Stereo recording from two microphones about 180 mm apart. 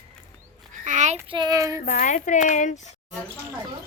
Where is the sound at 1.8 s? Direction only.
50° left (ahead or behind).